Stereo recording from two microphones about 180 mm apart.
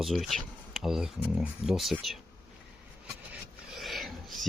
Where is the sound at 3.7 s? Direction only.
Centre (ahead or behind).